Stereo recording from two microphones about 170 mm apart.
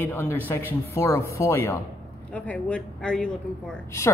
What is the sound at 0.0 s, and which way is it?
A man's voice, 15° left (ahead or behind).